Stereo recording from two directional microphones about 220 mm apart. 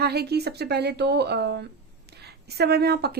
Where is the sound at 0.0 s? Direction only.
45° right (ahead or behind).